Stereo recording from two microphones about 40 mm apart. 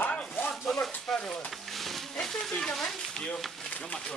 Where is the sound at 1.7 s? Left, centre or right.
Centre.